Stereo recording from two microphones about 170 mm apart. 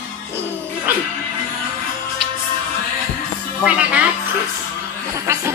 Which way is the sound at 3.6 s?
10° right (ahead or behind).